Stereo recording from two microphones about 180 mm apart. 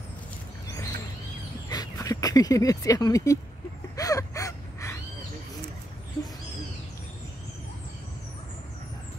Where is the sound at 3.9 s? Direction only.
20° left (ahead or behind).